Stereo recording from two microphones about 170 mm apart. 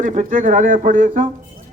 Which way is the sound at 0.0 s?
50° right (ahead or behind).